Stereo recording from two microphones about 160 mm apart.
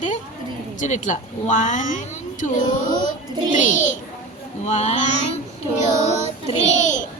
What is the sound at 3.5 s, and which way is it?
Speech, 55° left (ahead or behind).